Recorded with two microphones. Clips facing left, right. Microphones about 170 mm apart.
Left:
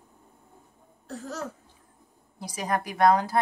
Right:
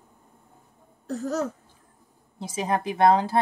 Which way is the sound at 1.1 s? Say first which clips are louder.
Right 8 dB; 45° right (ahead or behind).